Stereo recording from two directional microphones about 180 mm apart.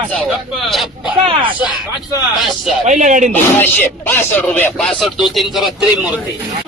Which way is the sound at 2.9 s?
45° right (ahead or behind).